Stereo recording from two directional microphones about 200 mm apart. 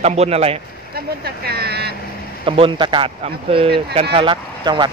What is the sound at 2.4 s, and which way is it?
Speech, 25° right (ahead or behind).